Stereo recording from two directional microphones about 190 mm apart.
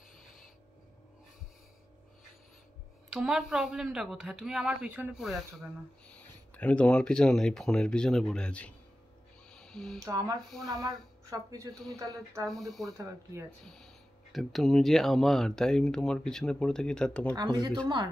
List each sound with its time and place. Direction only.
3.1 s speech: 5° right (ahead or behind)
9.5 s a sound: 5° left (ahead or behind)
9.9 s a woman's voice: 15° right (ahead or behind)
12.4 s speech: centre (ahead or behind)
17.4 s speech: 20° right (ahead or behind)